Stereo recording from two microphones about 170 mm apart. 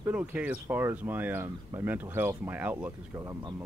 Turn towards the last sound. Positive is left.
turn(degrees=-20)  # may be behind; listen again after turning